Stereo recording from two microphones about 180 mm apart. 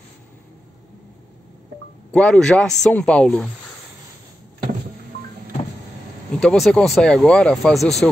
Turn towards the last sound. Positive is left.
turn(degrees=5)  # may be behind; listen again after turning